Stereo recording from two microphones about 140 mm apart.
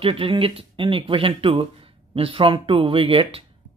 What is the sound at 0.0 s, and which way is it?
Speech, 40° right (ahead or behind).